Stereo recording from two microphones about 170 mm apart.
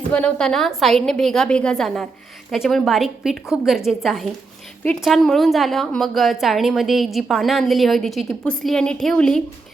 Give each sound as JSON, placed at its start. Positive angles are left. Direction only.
{"t": 0.1, "sound": "a woman's voice", "side_deg": 10}